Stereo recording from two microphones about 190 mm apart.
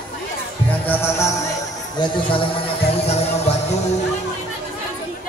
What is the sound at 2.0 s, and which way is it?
Speech, 25° left (ahead or behind).